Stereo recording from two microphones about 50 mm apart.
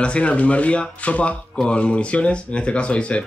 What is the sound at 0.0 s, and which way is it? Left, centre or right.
Speech, left.